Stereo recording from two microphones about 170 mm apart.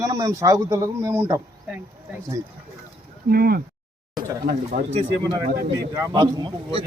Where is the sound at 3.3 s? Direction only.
60° right (ahead or behind).